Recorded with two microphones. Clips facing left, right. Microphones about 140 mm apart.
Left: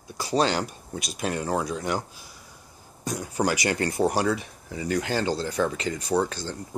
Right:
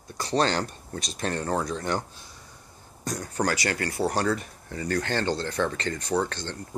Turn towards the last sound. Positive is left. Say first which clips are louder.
# left 1 dB
turn(degrees=5)  # may be behind; listen again after turning